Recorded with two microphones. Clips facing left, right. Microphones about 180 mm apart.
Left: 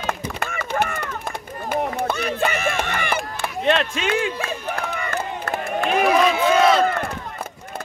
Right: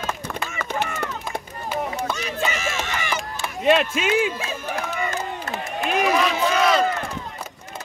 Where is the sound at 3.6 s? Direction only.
5° right (ahead or behind).